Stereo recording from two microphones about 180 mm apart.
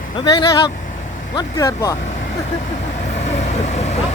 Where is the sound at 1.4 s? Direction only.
20° left (ahead or behind).